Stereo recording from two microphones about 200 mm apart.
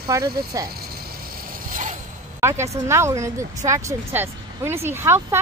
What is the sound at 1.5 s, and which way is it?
Zipper, 40° right (ahead or behind).